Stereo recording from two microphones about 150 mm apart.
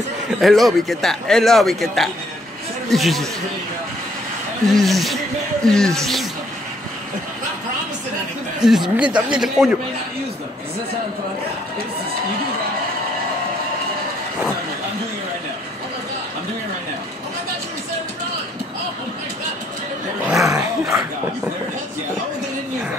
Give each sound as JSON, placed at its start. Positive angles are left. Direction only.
{"t": 0.4, "sound": "speech", "side_deg": 0}
{"t": 4.6, "sound": "speech", "side_deg": 0}
{"t": 8.5, "sound": "speech", "side_deg": -5}
{"t": 20.3, "sound": "dog", "side_deg": -20}